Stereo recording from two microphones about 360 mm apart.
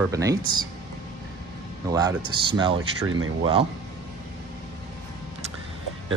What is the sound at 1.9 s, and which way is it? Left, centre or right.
Speech, centre.